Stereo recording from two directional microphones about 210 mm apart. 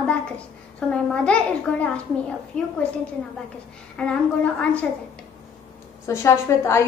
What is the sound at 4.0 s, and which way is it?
Speech, 5° left (ahead or behind).